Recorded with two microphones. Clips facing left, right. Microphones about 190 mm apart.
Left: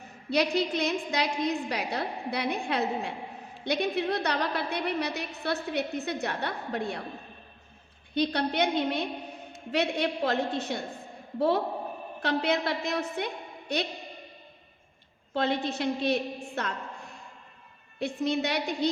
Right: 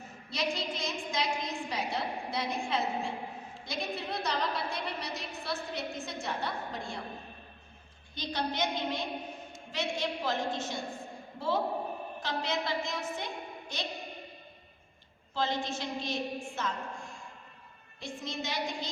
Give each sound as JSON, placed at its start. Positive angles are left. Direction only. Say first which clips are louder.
{"t": 0.3, "sound": "a woman's voice", "louder": "left 8 dB", "side_deg": 65}
{"t": 8.1, "sound": "a woman's voice", "louder": "left 8 dB", "side_deg": 65}
{"t": 15.3, "sound": "a woman's voice", "louder": "left 5 dB", "side_deg": 60}
{"t": 18.0, "sound": "a woman's voice", "louder": "left 10 dB", "side_deg": 65}